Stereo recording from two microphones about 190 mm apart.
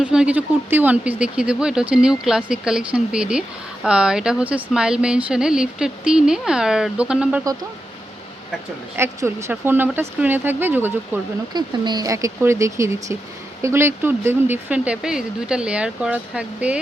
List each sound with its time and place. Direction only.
0.0 s speech: 5° right (ahead or behind)
9.0 s speech: 15° right (ahead or behind)
11.5 s speech: 20° right (ahead or behind); by 16.7 s 5° right (ahead or behind)